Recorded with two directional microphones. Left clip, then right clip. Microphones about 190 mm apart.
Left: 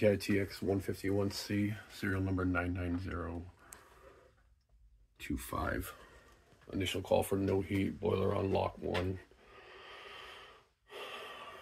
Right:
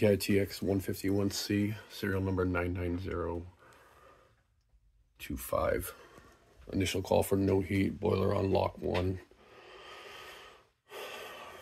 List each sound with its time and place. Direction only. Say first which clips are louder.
0.0 s speech: right 3 dB; 30° right (ahead or behind)
5.2 s speech: right 6 dB; 45° right (ahead or behind)
6.7 s a sound: right 3 dB; 50° right (ahead or behind)